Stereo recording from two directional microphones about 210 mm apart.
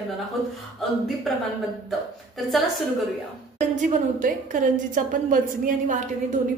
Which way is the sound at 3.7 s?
40° right (ahead or behind).